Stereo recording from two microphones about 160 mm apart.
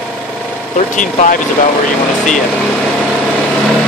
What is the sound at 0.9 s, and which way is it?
Speech, 50° left (ahead or behind).